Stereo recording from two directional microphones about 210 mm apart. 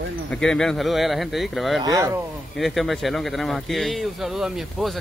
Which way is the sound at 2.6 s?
Centre (ahead or behind).